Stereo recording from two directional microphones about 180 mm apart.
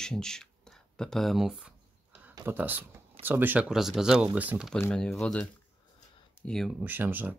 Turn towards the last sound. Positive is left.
turn(degrees=-10)  # may be behind; listen again after turning